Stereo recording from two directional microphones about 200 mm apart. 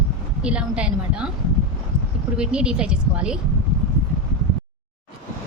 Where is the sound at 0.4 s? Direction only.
5° right (ahead or behind).